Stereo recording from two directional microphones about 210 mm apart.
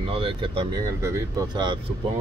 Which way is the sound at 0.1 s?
25° right (ahead or behind).